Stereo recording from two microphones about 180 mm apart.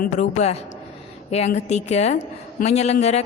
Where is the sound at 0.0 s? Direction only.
40° left (ahead or behind).